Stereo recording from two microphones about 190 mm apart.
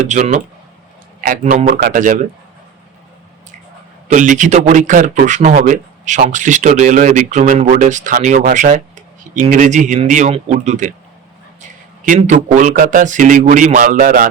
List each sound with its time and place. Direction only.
0.1 s a man's voice: 40° right (ahead or behind)
4.1 s a man's voice: 40° right (ahead or behind)
12.0 s speech: 40° right (ahead or behind)